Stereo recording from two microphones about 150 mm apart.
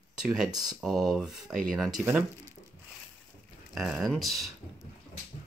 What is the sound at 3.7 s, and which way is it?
Speech, centre (ahead or behind).